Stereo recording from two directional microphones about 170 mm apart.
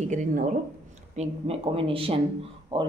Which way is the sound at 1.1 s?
35° right (ahead or behind).